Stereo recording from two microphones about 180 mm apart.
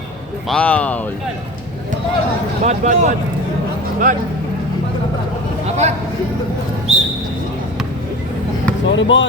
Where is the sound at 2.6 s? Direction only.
40° right (ahead or behind).